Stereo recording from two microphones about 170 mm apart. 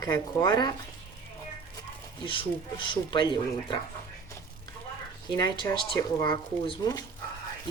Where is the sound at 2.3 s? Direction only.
30° left (ahead or behind).